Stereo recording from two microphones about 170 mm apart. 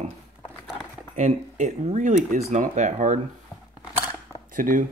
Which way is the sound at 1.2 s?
45° right (ahead or behind).